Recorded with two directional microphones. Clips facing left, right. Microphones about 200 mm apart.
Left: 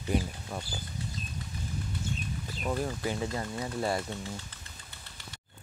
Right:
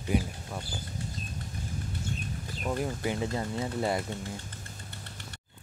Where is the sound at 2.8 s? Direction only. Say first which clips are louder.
Right 1 dB; 20° right (ahead or behind).